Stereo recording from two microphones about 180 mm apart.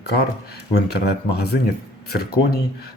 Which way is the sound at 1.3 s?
65° left (ahead or behind).